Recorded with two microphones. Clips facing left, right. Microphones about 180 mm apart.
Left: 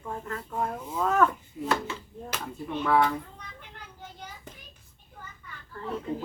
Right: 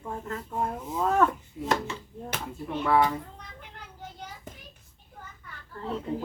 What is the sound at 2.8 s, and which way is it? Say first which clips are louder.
Speech: even; 5° right (ahead or behind).